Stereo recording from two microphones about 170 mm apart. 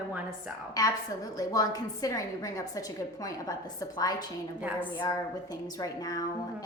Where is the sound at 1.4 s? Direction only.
20° left (ahead or behind).